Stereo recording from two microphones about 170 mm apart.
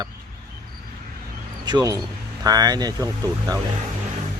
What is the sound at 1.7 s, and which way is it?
Speech, 25° right (ahead or behind).